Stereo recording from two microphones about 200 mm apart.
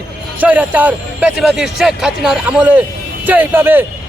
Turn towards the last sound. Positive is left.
turn(degrees=-10)  # may be behind; listen again after turning